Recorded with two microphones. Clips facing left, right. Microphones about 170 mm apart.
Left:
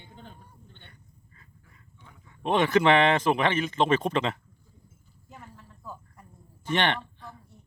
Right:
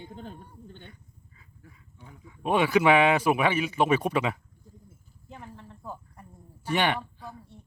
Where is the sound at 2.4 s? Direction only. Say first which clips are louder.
Even; 10° right (ahead or behind).